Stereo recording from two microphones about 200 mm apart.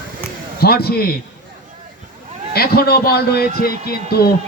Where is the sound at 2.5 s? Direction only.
50° left (ahead or behind).